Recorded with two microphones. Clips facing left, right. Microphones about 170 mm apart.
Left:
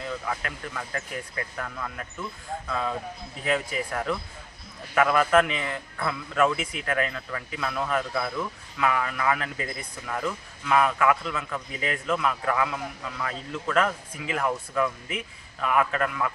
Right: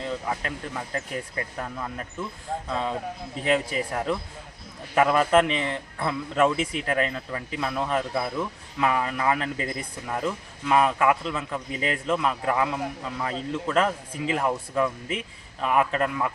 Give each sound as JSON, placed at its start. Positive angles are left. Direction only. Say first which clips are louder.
{"t": 0.0, "sound": "a man's voice", "louder": "right 2 dB", "side_deg": -25}